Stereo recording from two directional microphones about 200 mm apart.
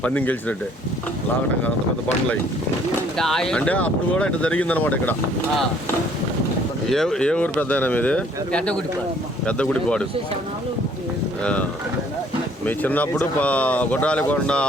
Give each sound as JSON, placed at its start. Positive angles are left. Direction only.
{"t": 0.0, "sound": "speech", "side_deg": 10}
{"t": 3.2, "sound": "speech", "side_deg": 0}
{"t": 6.9, "sound": "speech", "side_deg": 0}
{"t": 12.6, "sound": "speech", "side_deg": 10}